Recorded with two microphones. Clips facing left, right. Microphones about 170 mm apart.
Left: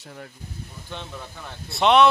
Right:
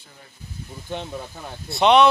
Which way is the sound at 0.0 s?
70° left (ahead or behind).